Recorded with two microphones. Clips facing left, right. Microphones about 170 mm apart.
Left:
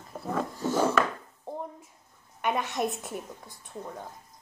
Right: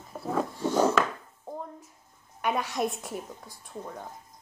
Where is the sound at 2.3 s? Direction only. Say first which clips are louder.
Even; centre (ahead or behind).